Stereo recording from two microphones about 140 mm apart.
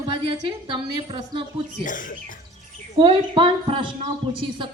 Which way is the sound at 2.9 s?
35° right (ahead or behind).